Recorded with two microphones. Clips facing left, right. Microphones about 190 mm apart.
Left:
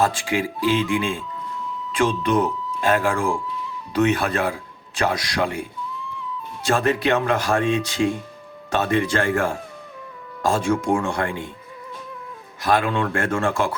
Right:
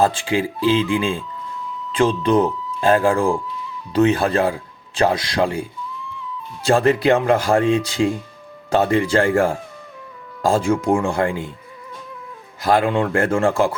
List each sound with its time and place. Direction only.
0.0 s a man's voice: 30° right (ahead or behind)
6.7 s speech: 30° right (ahead or behind)
12.6 s speech: 30° right (ahead or behind)